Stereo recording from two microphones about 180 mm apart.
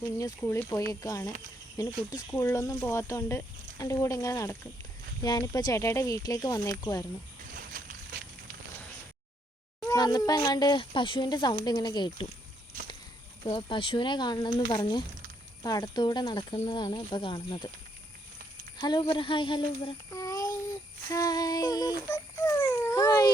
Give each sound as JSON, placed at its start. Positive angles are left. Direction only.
{"t": 0.0, "sound": "speech", "side_deg": 20}
{"t": 7.5, "sound": "a sound", "side_deg": -50}
{"t": 9.8, "sound": "speech", "side_deg": 20}
{"t": 13.5, "sound": "speech", "side_deg": 30}
{"t": 18.8, "sound": "child singing", "side_deg": 25}
{"t": 21.1, "sound": "a sound", "side_deg": 20}